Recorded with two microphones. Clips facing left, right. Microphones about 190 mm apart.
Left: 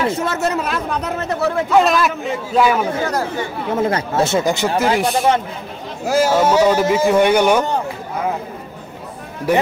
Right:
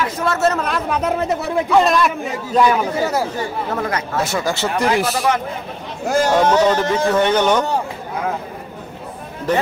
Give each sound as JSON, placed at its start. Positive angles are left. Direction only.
{"t": 0.0, "sound": "speech", "side_deg": 25}
{"t": 0.7, "sound": "a man's voice", "side_deg": -5}
{"t": 3.7, "sound": "speech", "side_deg": 25}
{"t": 4.9, "sound": "a man's voice", "side_deg": 0}
{"t": 9.5, "sound": "speech", "side_deg": 10}